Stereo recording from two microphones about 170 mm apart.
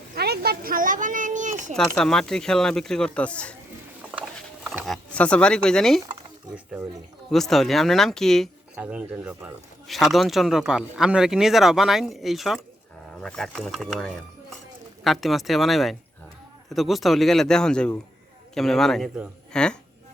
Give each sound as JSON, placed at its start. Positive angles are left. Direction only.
{"t": 0.1, "sound": "speech", "side_deg": -70}
{"t": 2.0, "sound": "speech", "side_deg": 5}
{"t": 4.9, "sound": "speech", "side_deg": 5}
{"t": 7.3, "sound": "speech", "side_deg": 0}
{"t": 8.7, "sound": "speech", "side_deg": -10}